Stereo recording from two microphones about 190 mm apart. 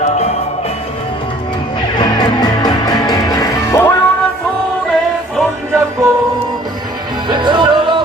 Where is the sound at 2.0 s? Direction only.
20° left (ahead or behind).